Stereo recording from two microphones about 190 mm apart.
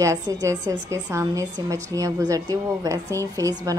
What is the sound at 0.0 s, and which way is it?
A woman's voice, 15° right (ahead or behind).